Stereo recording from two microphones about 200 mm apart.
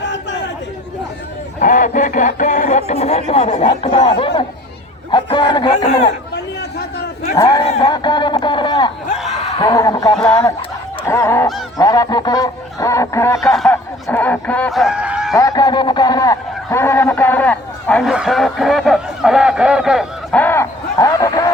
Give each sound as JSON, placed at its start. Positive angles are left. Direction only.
{"t": 0.0, "sound": "chatter", "side_deg": 60}
{"t": 1.5, "sound": "speech", "side_deg": 40}
{"t": 5.7, "sound": "speech", "side_deg": 35}
{"t": 6.3, "sound": "a sound", "side_deg": 55}
{"t": 7.3, "sound": "speech", "side_deg": 15}
{"t": 11.0, "sound": "goose", "side_deg": 10}
{"t": 11.8, "sound": "a sound", "side_deg": 15}
{"t": 13.4, "sound": "speech", "side_deg": 0}
{"t": 15.4, "sound": "a man's voice", "side_deg": 15}
{"t": 20.4, "sound": "a sound", "side_deg": 10}